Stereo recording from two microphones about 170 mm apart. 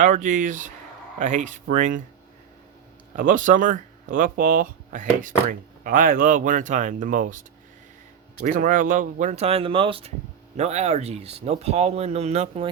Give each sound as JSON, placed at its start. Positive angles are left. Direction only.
{"t": 0.0, "sound": "speech", "side_deg": -50}
{"t": 3.2, "sound": "speech", "side_deg": -50}
{"t": 8.4, "sound": "speech", "side_deg": -50}